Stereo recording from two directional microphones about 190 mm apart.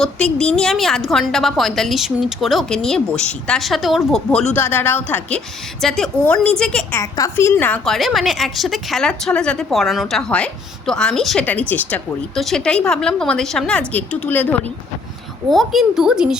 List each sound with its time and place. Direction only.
0.0 s a woman's voice: 5° left (ahead or behind)
7.0 s a woman's voice: 15° left (ahead or behind)
15.4 s a woman's voice: centre (ahead or behind)